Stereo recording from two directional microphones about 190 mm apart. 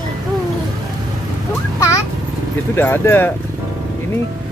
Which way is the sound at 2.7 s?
10° left (ahead or behind).